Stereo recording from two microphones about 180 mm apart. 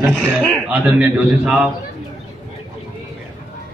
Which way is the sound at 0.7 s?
10° right (ahead or behind).